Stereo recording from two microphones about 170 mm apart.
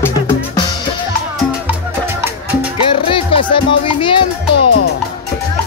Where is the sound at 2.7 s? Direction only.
30° left (ahead or behind).